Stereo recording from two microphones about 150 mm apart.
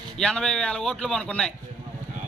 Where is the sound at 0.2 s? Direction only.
5° left (ahead or behind).